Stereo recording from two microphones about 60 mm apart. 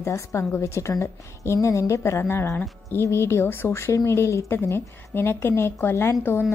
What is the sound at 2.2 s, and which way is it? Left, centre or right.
Speech, left.